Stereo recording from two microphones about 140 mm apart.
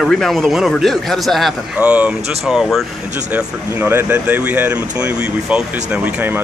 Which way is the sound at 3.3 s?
15° right (ahead or behind).